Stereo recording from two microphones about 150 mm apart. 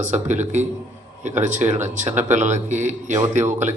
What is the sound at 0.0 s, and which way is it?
A man's voice, 55° right (ahead or behind).